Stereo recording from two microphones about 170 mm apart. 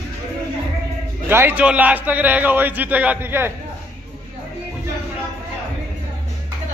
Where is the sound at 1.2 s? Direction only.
15° right (ahead or behind).